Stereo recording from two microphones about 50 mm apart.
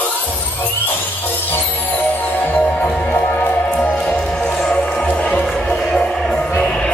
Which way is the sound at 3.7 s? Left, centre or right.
Left.